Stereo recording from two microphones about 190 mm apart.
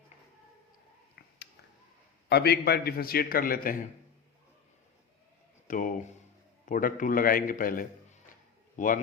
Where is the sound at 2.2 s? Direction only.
60° left (ahead or behind).